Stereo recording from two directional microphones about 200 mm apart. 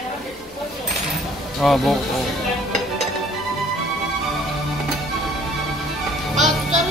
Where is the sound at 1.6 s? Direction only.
Centre (ahead or behind).